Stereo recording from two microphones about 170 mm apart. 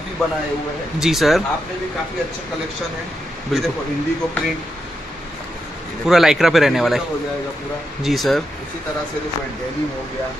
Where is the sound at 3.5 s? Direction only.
Centre (ahead or behind).